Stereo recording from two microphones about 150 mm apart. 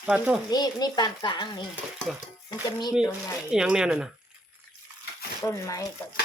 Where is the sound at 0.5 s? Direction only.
25° left (ahead or behind).